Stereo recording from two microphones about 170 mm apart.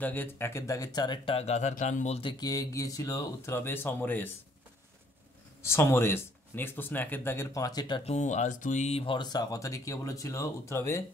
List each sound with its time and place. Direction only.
0.0 s speech: 10° left (ahead or behind); by 2.3 s 40° left (ahead or behind)
2.3 s speech: 20° left (ahead or behind)
5.6 s speech: 15° left (ahead or behind)
8.0 s speech: 40° left (ahead or behind); by 11.1 s 15° left (ahead or behind)